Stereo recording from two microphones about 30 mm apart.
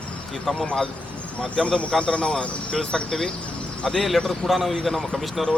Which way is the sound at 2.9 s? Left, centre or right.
Centre.